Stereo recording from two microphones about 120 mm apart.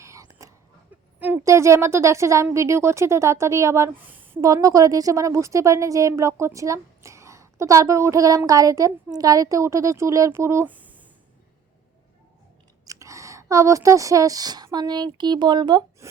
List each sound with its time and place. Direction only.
0.0 s throat clearing: 25° right (ahead or behind)
1.5 s a woman's voice: 25° right (ahead or behind)
10.7 s a sound: 15° right (ahead or behind)
12.8 s a woman's voice: 25° right (ahead or behind)